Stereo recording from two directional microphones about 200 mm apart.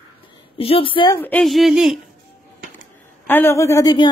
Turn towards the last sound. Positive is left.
turn(degrees=20)  # may be behind; listen again after turning